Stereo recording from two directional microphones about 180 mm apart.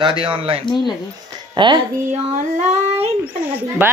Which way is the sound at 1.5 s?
25° right (ahead or behind).